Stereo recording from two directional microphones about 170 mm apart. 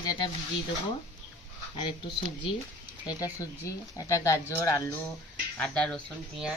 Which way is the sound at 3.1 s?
20° left (ahead or behind).